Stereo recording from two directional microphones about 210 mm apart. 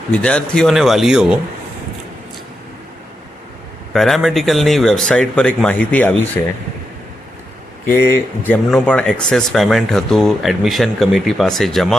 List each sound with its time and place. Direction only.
0.1 s speech: 5° left (ahead or behind)
3.9 s speech: centre (ahead or behind)
7.9 s speech: 10° left (ahead or behind)